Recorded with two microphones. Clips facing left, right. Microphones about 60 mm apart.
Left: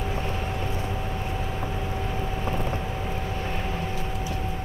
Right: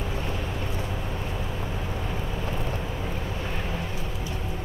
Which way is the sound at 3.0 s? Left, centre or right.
Centre.